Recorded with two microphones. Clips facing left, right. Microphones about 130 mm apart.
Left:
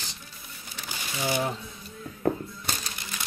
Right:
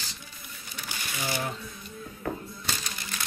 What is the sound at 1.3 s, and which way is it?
Speech, 20° left (ahead or behind).